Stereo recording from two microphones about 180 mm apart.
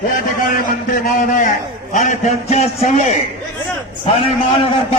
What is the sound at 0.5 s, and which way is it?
A man's voice, 50° left (ahead or behind).